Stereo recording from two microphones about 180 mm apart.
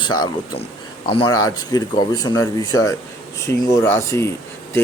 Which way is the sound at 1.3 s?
20° left (ahead or behind).